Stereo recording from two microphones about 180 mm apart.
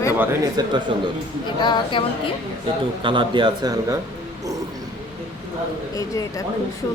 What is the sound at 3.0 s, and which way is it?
Speech, 25° right (ahead or behind).